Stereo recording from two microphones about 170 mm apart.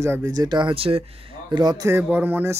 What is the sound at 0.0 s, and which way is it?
Speech, 15° right (ahead or behind).